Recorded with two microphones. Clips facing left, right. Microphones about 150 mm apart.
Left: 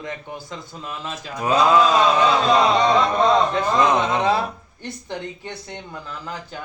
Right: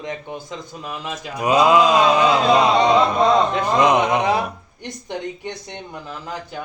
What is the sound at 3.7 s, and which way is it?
Speech, 15° right (ahead or behind).